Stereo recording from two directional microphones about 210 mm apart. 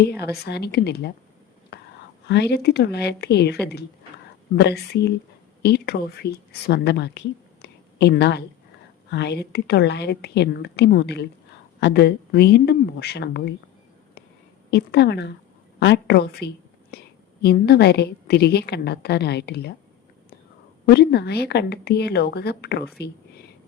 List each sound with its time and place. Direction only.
0.1 s a woman's voice: 50° left (ahead or behind)
1.7 s whispering: 50° left (ahead or behind)
2.2 s a woman's voice: 55° left (ahead or behind)
7.6 s a sound: 50° left (ahead or behind)
9.0 s a woman's voice: 50° left (ahead or behind)
14.7 s a woman's voice: 50° left (ahead or behind)
16.9 s whispering: 50° left (ahead or behind)
17.4 s a woman's voice: 50° left (ahead or behind)
20.8 s a woman's voice: 50° left (ahead or behind)